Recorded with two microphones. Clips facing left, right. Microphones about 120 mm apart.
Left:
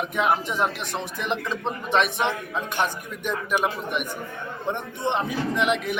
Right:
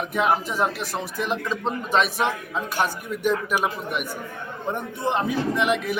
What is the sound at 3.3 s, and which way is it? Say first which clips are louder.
A man's voice: right 2 dB; 5° right (ahead or behind).